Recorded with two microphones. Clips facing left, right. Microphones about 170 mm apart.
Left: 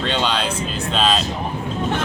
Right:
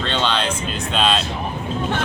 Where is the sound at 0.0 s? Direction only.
10° left (ahead or behind).